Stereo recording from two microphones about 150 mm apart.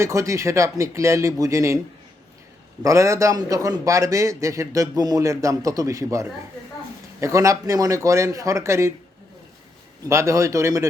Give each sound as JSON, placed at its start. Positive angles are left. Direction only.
{"t": 0.0, "sound": "a man's voice", "side_deg": -20}
{"t": 2.8, "sound": "a man's voice", "side_deg": -20}
{"t": 10.1, "sound": "a man's voice", "side_deg": -20}